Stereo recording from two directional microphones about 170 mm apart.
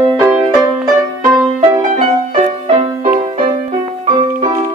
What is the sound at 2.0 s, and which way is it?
Music, 40° right (ahead or behind).